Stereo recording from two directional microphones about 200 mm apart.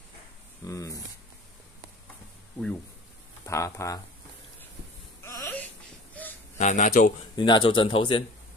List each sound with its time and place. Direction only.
0.7 s speech: 15° left (ahead or behind)
3.4 s speech: 15° left (ahead or behind)
5.2 s a sound: 10° left (ahead or behind)
6.6 s speech: 35° left (ahead or behind)
7.3 s speech: 25° left (ahead or behind)